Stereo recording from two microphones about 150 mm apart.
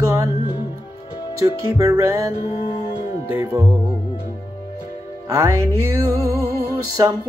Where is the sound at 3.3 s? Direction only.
15° right (ahead or behind).